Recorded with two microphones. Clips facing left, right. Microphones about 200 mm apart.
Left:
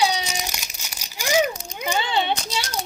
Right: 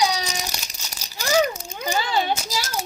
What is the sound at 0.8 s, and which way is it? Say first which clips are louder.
Crumpling: even; 10° left (ahead or behind).